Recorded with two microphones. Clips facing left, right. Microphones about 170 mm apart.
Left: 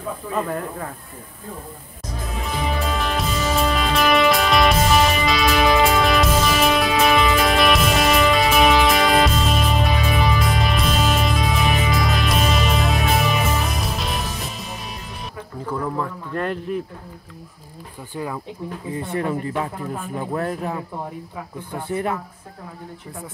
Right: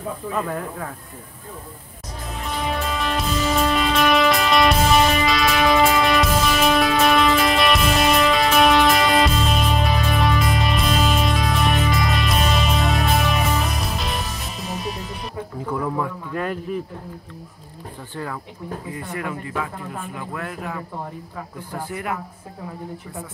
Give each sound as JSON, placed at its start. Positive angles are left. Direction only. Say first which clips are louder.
{"t": 0.3, "sound": "speech", "louder": "left 2 dB", "side_deg": 5}
{"t": 2.4, "sound": "music", "louder": "even", "side_deg": 0}
{"t": 15.6, "sound": "a sound", "louder": "even", "side_deg": 0}
{"t": 18.1, "sound": "speech", "louder": "left 2 dB", "side_deg": 15}
{"t": 18.9, "sound": "speech", "louder": "left 7 dB", "side_deg": 25}
{"t": 21.8, "sound": "speech", "louder": "left 7 dB", "side_deg": 30}